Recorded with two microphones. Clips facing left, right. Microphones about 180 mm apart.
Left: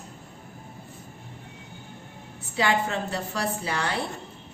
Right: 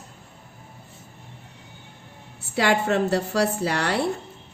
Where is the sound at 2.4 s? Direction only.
75° right (ahead or behind).